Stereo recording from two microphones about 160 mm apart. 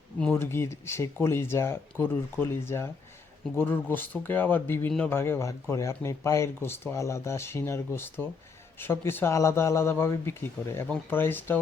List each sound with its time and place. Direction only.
0.3 s speech: 15° left (ahead or behind)